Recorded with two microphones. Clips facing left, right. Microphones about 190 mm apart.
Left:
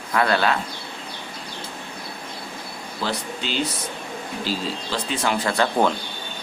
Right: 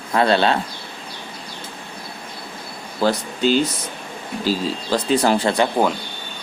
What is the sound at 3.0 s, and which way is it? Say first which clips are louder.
Speech: right 10 dB; 45° right (ahead or behind).